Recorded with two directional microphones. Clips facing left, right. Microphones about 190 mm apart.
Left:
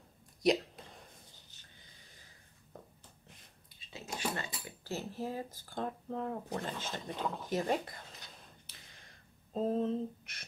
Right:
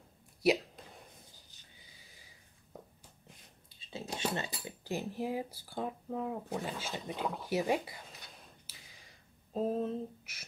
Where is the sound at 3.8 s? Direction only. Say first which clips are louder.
Right 2 dB; 30° right (ahead or behind).